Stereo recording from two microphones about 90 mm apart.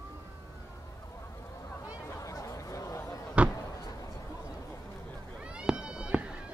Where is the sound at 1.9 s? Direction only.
40° left (ahead or behind).